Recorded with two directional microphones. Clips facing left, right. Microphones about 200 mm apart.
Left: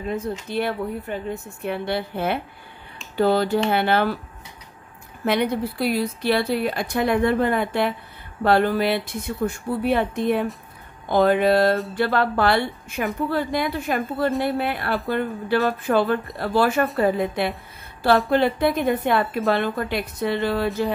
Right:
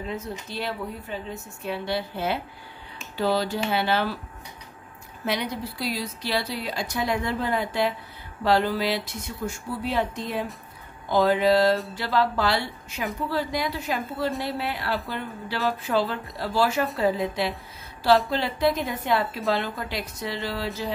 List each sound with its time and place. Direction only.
0.1 s a woman's voice: 55° left (ahead or behind)
5.2 s a woman's voice: 55° left (ahead or behind)